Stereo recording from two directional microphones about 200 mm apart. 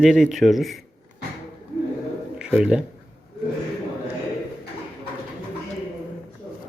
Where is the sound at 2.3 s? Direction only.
5° right (ahead or behind).